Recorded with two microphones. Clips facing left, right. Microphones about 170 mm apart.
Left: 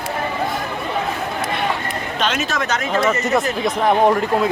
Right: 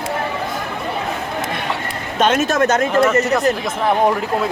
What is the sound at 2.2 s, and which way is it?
Speech, 50° right (ahead or behind).